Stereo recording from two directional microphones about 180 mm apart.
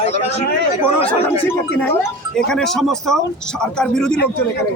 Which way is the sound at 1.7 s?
5° left (ahead or behind).